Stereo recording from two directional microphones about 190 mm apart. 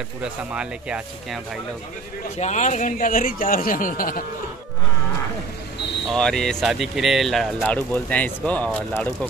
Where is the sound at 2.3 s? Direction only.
35° left (ahead or behind).